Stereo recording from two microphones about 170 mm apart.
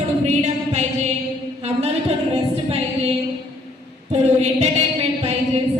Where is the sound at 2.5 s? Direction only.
35° right (ahead or behind).